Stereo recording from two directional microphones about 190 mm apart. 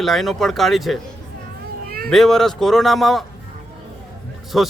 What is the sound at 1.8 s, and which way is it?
Cat, 50° right (ahead or behind).